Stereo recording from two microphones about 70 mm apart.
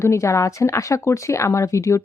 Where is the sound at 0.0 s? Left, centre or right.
Left.